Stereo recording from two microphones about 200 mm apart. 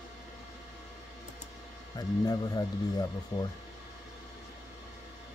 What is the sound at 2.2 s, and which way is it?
Speech, 20° left (ahead or behind).